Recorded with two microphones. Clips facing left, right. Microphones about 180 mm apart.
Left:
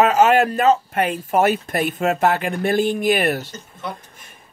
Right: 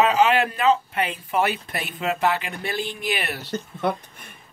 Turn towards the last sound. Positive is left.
turn(degrees=-60)  # may be behind; listen again after turning